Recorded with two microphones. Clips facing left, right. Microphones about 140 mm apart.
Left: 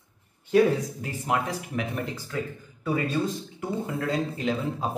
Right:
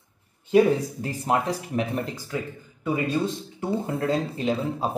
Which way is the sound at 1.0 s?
35° right (ahead or behind).